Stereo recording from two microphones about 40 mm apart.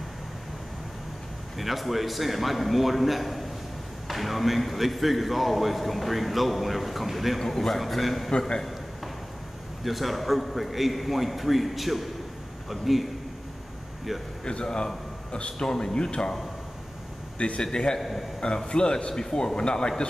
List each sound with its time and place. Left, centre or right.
1.6 s a man's voice: centre
8.3 s a man's voice: centre
9.8 s a man's voice: centre
14.4 s a man's voice: left
17.4 s a man's voice: left
17.9 s a man's voice: centre
18.7 s a man's voice: left